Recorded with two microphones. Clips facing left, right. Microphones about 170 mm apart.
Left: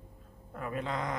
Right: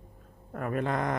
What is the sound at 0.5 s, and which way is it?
Speech, 55° right (ahead or behind).